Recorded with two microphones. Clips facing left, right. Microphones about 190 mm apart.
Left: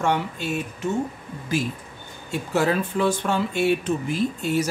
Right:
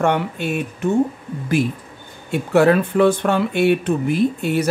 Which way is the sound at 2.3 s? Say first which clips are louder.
Right 8 dB; 65° right (ahead or behind).